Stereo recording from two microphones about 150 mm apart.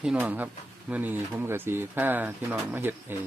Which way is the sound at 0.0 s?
10° right (ahead or behind).